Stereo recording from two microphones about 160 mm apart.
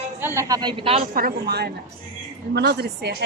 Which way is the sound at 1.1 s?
70° right (ahead or behind).